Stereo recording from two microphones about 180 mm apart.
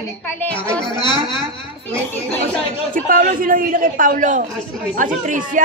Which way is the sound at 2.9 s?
50° right (ahead or behind).